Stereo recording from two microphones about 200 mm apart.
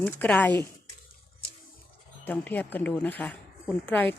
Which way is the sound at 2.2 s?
10° left (ahead or behind).